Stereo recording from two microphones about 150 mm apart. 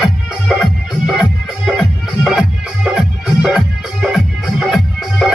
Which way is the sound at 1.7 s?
Centre (ahead or behind).